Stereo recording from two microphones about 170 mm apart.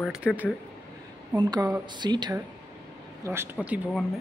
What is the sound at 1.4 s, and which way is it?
Speech, 20° right (ahead or behind).